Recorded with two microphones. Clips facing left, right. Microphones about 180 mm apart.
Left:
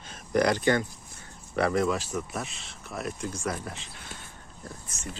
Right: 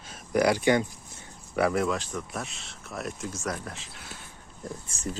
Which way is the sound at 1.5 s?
5° right (ahead or behind).